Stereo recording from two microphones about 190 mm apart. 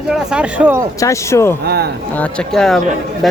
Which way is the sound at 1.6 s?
55° right (ahead or behind).